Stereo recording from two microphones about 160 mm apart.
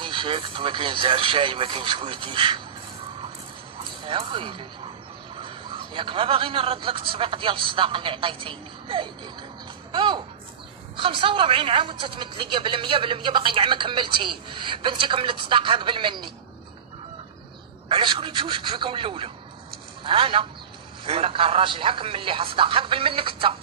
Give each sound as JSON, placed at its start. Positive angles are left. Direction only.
{"t": 0.0, "sound": "a woman's voice", "side_deg": -30}
{"t": 4.0, "sound": "a woman's voice", "side_deg": -30}
{"t": 9.9, "sound": "a sound", "side_deg": -30}
{"t": 11.0, "sound": "a woman's voice", "side_deg": -30}
{"t": 17.8, "sound": "a woman's voice", "side_deg": -30}